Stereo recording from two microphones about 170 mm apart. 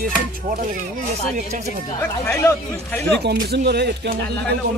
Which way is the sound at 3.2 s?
70° right (ahead or behind).